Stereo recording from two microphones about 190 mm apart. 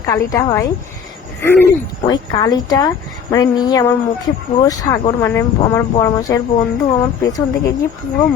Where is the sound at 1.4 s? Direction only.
10° left (ahead or behind).